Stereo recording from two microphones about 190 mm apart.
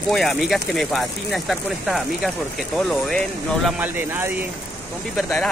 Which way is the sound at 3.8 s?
10° right (ahead or behind).